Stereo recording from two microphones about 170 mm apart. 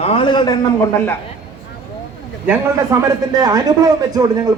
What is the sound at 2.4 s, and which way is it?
A man's voice, 20° right (ahead or behind).